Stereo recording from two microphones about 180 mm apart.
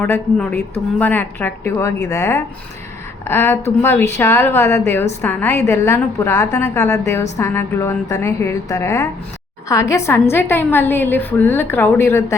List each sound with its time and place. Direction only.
0.0 s a woman's voice: 10° left (ahead or behind)